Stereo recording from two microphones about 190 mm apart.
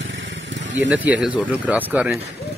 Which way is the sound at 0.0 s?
75° right (ahead or behind).